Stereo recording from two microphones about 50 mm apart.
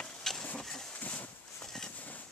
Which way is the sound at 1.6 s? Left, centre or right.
Centre.